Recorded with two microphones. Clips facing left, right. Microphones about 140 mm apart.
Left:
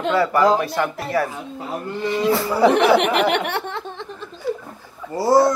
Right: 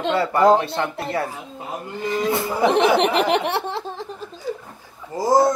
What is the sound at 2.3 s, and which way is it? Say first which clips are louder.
Speech: left 2 dB; 20° right (ahead or behind).